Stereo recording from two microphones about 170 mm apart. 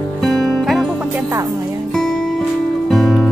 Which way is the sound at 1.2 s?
15° right (ahead or behind).